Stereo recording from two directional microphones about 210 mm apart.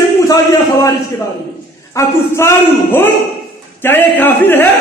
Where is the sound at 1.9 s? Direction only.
10° left (ahead or behind).